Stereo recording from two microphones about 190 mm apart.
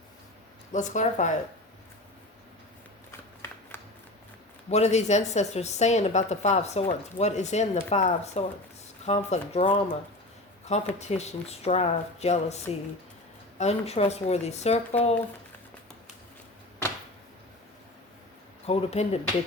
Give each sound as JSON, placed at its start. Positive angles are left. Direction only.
{"t": 0.7, "sound": "speech", "side_deg": 40}
{"t": 3.7, "sound": "a sound", "side_deg": 10}
{"t": 4.7, "sound": "speech", "side_deg": 35}
{"t": 18.6, "sound": "speech", "side_deg": 35}